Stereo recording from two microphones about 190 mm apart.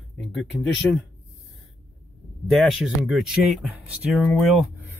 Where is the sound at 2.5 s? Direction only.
Centre (ahead or behind).